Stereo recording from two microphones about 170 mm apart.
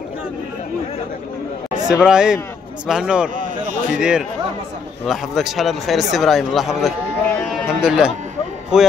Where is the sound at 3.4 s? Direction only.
50° right (ahead or behind).